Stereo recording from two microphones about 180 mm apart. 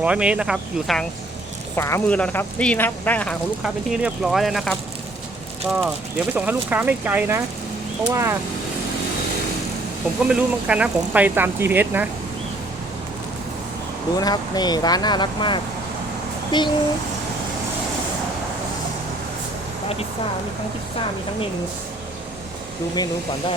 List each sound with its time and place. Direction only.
0.0 s speech: 5° right (ahead or behind)
1.7 s speech: 15° left (ahead or behind)
3.6 s speech: 5° right (ahead or behind)
10.2 s speech: 5° right (ahead or behind)
14.2 s speech: 20° left (ahead or behind)